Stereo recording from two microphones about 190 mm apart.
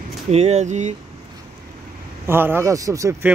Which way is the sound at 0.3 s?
35° right (ahead or behind).